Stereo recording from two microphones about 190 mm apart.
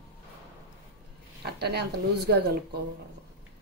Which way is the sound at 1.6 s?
60° right (ahead or behind).